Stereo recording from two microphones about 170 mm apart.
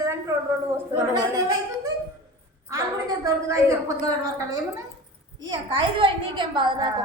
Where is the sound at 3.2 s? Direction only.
20° right (ahead or behind).